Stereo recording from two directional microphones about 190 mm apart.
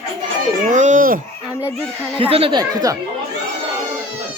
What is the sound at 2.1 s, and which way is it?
Speech, 30° right (ahead or behind).